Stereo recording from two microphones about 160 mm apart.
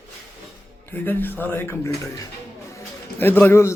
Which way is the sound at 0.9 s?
10° left (ahead or behind).